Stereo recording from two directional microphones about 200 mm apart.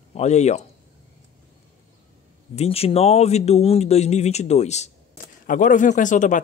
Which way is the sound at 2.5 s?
30° left (ahead or behind).